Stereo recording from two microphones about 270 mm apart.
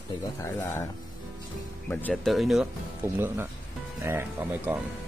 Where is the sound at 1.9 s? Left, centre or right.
Centre.